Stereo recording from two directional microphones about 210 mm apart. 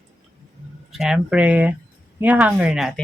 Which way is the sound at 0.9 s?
Centre (ahead or behind).